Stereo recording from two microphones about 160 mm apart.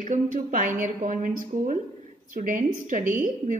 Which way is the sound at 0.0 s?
50° right (ahead or behind).